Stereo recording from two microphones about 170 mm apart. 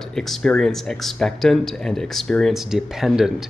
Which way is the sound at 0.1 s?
5° left (ahead or behind).